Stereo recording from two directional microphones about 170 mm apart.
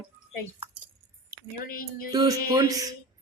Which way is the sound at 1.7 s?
60° left (ahead or behind).